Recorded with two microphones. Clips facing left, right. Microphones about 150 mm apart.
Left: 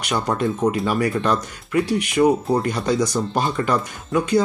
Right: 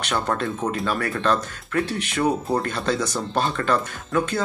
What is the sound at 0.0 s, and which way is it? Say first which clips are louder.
Speech: left 3 dB; 15° left (ahead or behind).